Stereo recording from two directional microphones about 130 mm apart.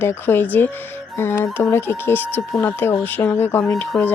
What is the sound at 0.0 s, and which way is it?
Speech, 15° left (ahead or behind).